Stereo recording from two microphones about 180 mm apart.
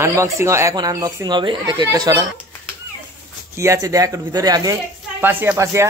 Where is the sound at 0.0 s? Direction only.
15° right (ahead or behind).